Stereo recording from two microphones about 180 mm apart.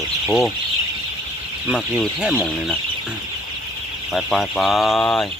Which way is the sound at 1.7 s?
5° right (ahead or behind).